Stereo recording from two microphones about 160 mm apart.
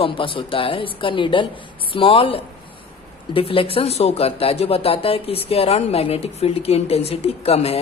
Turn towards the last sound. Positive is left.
turn(degrees=40)  # may be behind; listen again after turning